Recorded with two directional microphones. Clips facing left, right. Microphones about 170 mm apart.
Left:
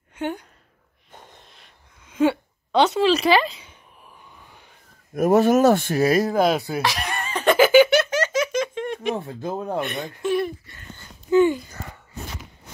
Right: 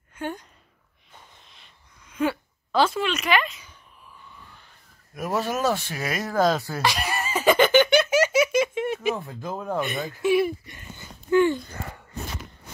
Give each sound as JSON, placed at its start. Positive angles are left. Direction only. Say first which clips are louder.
{"t": 2.0, "sound": "a sound", "louder": "left 5 dB", "side_deg": 25}
{"t": 3.1, "sound": "speech", "louder": "left 6 dB", "side_deg": 30}
{"t": 5.1, "sound": "speech", "louder": "left 10 dB", "side_deg": 50}
{"t": 5.9, "sound": "speech", "louder": "left 11 dB", "side_deg": 35}
{"t": 6.3, "sound": "speech", "louder": "left 2 dB", "side_deg": 15}
{"t": 6.8, "sound": "giggle", "louder": "even", "side_deg": 0}
{"t": 8.1, "sound": "baby laughter", "louder": "right 2 dB", "side_deg": -10}
{"t": 9.1, "sound": "speech", "louder": "left 4 dB", "side_deg": 30}
{"t": 9.8, "sound": "speech", "louder": "even", "side_deg": 0}
{"t": 11.2, "sound": "speech", "louder": "left 3 dB", "side_deg": 20}